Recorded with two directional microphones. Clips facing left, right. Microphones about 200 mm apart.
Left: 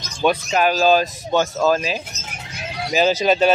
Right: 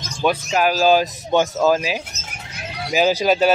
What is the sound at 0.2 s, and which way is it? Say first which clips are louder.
Speech: left 1 dB; 5° right (ahead or behind).